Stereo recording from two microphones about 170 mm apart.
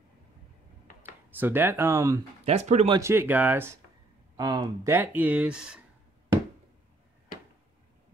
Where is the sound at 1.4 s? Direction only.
10° right (ahead or behind).